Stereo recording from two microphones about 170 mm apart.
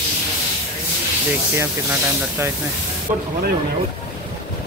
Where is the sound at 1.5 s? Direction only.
15° right (ahead or behind).